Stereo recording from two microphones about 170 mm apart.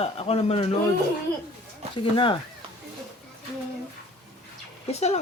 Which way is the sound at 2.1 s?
30° left (ahead or behind).